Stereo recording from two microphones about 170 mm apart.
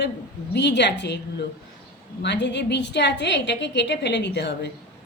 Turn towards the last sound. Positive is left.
turn(degrees=90)